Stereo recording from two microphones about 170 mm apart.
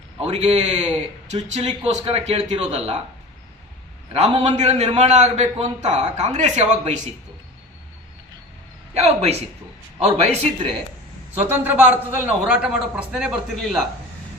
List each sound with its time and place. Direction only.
0.2 s a man's voice: 40° right (ahead or behind)
4.1 s a man's voice: 35° right (ahead or behind)
9.0 s a man's voice: 40° right (ahead or behind)
11.3 s a man's voice: 15° right (ahead or behind)